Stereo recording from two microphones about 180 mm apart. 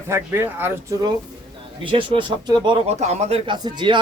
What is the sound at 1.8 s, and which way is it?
Speech, 25° right (ahead or behind).